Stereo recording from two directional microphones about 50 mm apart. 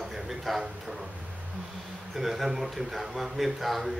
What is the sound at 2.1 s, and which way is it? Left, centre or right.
A man's voice, centre.